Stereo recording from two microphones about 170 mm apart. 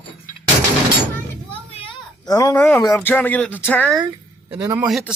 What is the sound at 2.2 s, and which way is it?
Speech, 20° left (ahead or behind).